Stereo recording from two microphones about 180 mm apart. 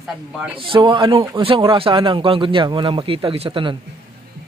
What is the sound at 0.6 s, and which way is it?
A man's voice, 30° right (ahead or behind).